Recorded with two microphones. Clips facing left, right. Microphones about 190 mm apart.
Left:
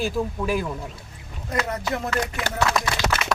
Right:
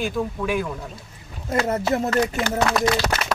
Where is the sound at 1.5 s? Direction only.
30° right (ahead or behind).